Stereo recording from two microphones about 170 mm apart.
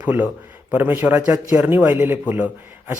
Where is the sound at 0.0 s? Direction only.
10° right (ahead or behind).